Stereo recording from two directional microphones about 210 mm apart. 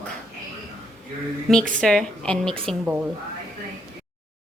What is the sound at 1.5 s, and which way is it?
Speech, 5° left (ahead or behind).